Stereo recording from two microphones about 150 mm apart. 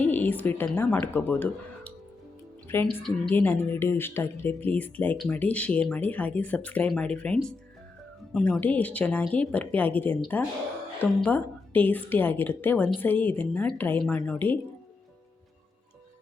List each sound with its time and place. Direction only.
0.0 s a woman's voice: 10° left (ahead or behind)